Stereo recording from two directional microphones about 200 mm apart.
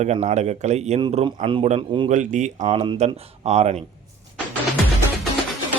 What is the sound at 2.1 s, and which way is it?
Speech, 40° right (ahead or behind).